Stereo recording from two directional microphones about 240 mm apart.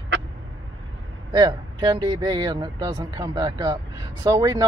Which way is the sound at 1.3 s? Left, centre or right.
Centre.